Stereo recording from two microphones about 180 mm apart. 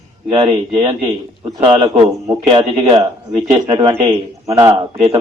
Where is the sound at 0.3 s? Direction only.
30° right (ahead or behind).